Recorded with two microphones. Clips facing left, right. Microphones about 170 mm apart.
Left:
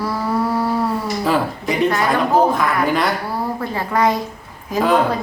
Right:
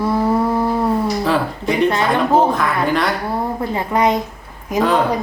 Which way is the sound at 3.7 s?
20° right (ahead or behind).